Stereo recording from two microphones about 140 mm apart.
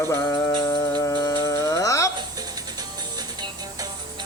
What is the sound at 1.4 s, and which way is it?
Speech, 20° left (ahead or behind).